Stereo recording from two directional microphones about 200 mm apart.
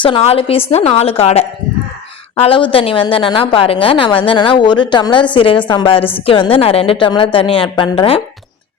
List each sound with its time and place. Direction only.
0.0 s a woman's voice: 30° left (ahead or behind)